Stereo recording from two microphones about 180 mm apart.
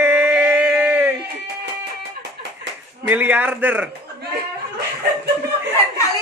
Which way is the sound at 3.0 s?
10° right (ahead or behind).